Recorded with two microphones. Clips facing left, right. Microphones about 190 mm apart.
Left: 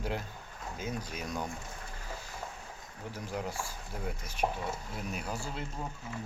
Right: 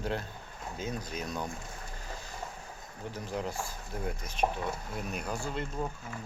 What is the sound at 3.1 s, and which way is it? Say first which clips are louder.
Speech: right 2 dB; 10° left (ahead or behind).